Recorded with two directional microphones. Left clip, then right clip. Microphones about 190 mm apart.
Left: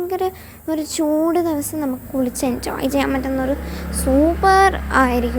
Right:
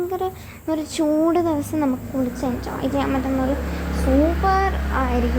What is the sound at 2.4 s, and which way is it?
Speech, 30° left (ahead or behind).